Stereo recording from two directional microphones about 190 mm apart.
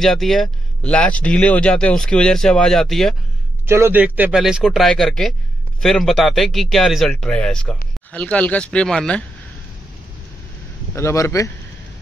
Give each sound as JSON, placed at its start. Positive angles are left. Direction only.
{"t": 0.0, "sound": "speech", "side_deg": 0}
{"t": 3.6, "sound": "speech", "side_deg": -15}
{"t": 11.0, "sound": "speech", "side_deg": 15}